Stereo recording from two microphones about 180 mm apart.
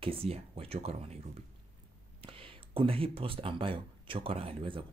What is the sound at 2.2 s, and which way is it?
Speech, 30° right (ahead or behind).